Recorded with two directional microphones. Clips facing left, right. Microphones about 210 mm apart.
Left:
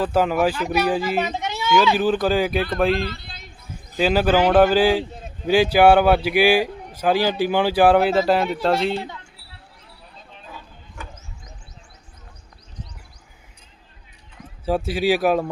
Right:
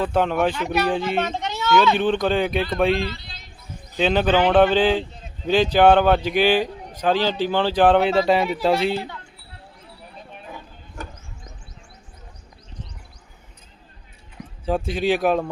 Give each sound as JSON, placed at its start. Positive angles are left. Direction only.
{"t": 0.0, "sound": "speech", "side_deg": 5}
{"t": 3.0, "sound": "speech", "side_deg": 50}
{"t": 3.9, "sound": "speech", "side_deg": 5}
{"t": 14.6, "sound": "speech", "side_deg": 5}